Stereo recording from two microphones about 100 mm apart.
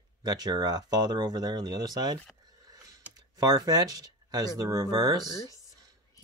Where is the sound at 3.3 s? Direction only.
40° right (ahead or behind).